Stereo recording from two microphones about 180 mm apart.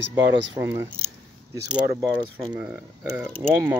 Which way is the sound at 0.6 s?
15° right (ahead or behind).